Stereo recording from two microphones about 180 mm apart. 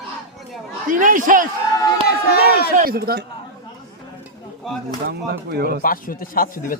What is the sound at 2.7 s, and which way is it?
Speech, 55° right (ahead or behind).